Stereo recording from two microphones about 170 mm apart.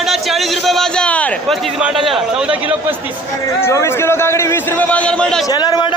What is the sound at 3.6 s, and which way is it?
Speech, 15° left (ahead or behind).